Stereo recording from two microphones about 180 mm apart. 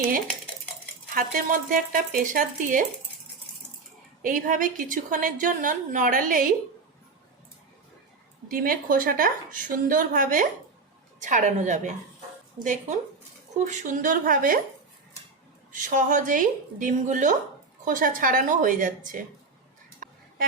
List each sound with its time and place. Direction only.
1.1 s a woman's voice: 50° right (ahead or behind)
4.2 s a woman's voice: 50° right (ahead or behind)
8.4 s a woman's voice: 50° right (ahead or behind)
15.7 s a woman's voice: 45° right (ahead or behind)